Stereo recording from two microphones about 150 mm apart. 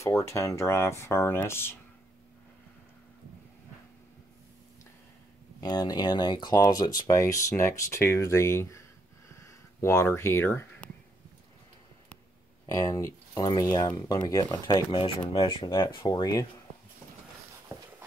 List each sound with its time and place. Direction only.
0.0 s speech: 20° left (ahead or behind)
5.6 s speech: 25° left (ahead or behind)
9.3 s a sound: 20° left (ahead or behind)
12.6 s speech: 20° left (ahead or behind)
17.7 s walk: 15° right (ahead or behind)